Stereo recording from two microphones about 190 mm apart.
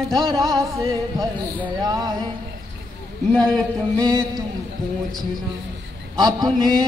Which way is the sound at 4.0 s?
20° right (ahead or behind).